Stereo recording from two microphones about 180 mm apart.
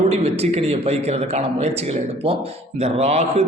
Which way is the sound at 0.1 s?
35° right (ahead or behind).